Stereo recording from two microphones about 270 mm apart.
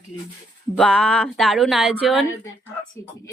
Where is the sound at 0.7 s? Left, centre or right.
Centre.